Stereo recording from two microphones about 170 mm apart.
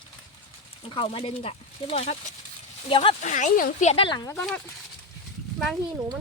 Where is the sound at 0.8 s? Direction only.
30° left (ahead or behind).